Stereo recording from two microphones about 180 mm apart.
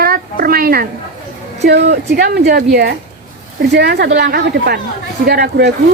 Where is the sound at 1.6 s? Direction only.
70° right (ahead or behind).